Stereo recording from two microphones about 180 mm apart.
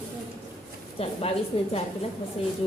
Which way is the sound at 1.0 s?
35° left (ahead or behind).